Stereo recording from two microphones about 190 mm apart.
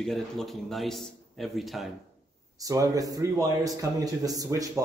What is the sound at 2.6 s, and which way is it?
Speech, 15° right (ahead or behind).